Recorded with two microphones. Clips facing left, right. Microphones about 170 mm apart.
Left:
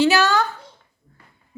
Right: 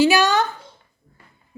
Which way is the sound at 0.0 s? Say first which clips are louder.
Right 1 dB; 15° right (ahead or behind).